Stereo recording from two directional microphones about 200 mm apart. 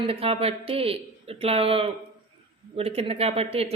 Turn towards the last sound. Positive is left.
turn(degrees=-30)  # may be behind; listen again after turning